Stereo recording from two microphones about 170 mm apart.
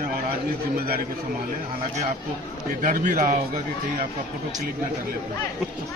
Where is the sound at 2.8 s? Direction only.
55° right (ahead or behind).